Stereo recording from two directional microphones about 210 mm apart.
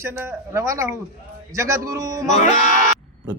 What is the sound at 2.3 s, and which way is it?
Speech, 35° left (ahead or behind).